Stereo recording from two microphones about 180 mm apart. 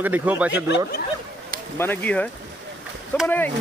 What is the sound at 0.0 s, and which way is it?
Speech, 10° right (ahead or behind).